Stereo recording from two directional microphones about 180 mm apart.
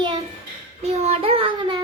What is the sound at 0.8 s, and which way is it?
Child singing, 35° right (ahead or behind).